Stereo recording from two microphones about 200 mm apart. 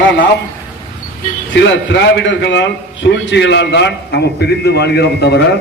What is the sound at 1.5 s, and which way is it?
A man's voice, 65° left (ahead or behind).